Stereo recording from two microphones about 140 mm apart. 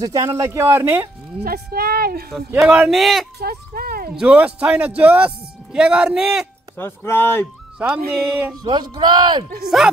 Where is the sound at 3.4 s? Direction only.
90° right.